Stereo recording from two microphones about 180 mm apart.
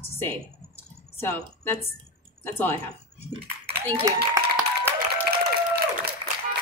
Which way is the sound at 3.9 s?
20° right (ahead or behind).